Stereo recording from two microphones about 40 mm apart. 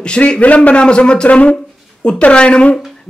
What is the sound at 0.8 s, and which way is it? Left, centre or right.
A man's voice, left.